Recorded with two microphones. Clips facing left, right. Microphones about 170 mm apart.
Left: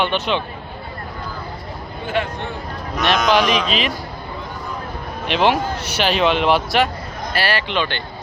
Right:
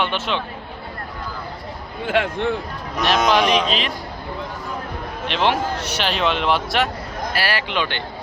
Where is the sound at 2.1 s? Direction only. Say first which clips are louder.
Right 2 dB; 90° right.